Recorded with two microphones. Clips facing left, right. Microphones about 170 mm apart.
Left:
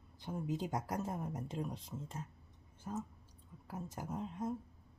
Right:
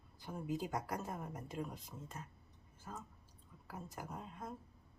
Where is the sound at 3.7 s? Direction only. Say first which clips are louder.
Left 4 dB; 20° left (ahead or behind).